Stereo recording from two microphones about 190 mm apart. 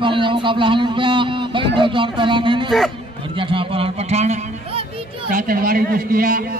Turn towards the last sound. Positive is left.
turn(degrees=-45)  # may be behind; listen again after turning